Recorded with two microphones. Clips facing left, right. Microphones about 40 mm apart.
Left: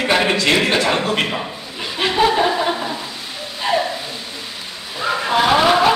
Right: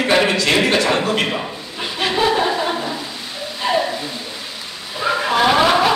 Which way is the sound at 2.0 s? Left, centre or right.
Centre.